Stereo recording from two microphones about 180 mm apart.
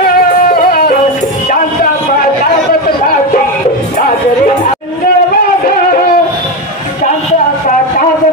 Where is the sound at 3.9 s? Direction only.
45° left (ahead or behind).